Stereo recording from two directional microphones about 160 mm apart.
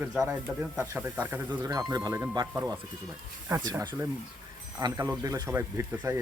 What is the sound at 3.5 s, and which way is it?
Speech, 20° right (ahead or behind).